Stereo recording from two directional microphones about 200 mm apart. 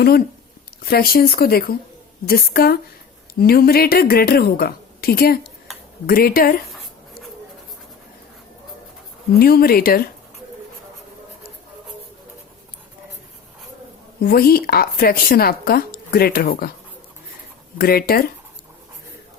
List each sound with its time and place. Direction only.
0.9 s a woman's voice: 50° left (ahead or behind)
9.4 s a woman's voice: 50° left (ahead or behind)
14.2 s a woman's voice: 50° left (ahead or behind)
17.7 s a woman's voice: 50° left (ahead or behind)